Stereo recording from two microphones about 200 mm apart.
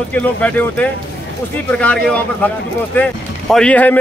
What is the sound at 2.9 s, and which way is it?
Speech, 5° left (ahead or behind).